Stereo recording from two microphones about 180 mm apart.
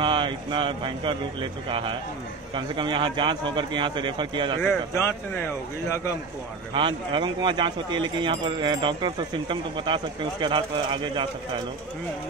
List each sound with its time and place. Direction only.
0.0 s speech: 25° right (ahead or behind)
4.6 s speech: 10° left (ahead or behind)
6.7 s speech: 25° right (ahead or behind)